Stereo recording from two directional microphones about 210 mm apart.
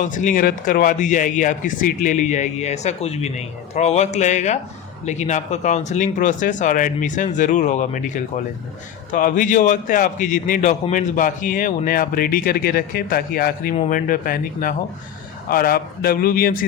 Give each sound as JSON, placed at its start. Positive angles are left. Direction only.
{"t": 0.0, "sound": "a man's voice", "side_deg": 35}